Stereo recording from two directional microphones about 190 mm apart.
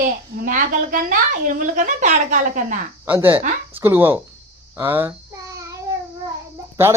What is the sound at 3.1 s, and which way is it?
Speech, 10° right (ahead or behind).